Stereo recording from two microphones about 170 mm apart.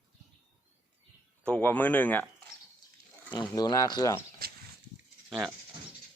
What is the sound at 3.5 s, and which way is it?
Speech, 20° left (ahead or behind).